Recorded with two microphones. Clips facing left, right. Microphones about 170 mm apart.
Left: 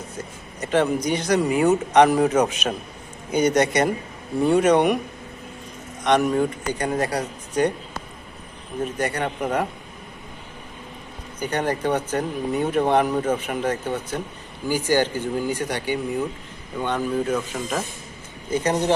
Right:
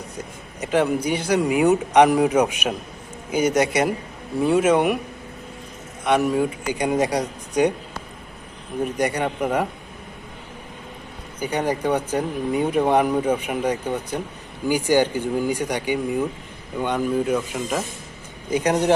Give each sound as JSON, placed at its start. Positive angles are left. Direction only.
{"t": 0.2, "sound": "speech", "side_deg": -10}
{"t": 6.1, "sound": "speech", "side_deg": -5}
{"t": 8.8, "sound": "speech", "side_deg": -15}
{"t": 11.3, "sound": "speech", "side_deg": -10}